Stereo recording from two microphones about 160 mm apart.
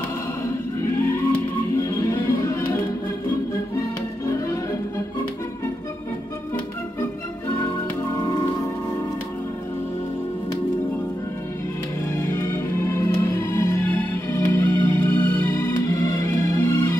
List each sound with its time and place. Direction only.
0.8 s music: 15° left (ahead or behind)
7.0 s organ: 15° left (ahead or behind)
12.3 s music: 15° left (ahead or behind)